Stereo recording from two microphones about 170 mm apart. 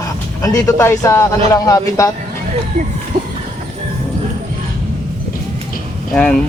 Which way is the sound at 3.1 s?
60° right (ahead or behind).